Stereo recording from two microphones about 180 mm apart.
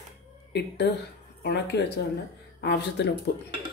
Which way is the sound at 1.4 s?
65° left (ahead or behind).